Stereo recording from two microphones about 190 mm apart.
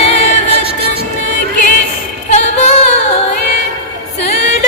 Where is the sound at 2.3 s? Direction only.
35° left (ahead or behind).